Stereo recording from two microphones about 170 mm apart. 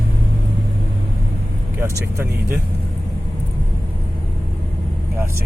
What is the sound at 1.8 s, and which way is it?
Speech, 15° right (ahead or behind).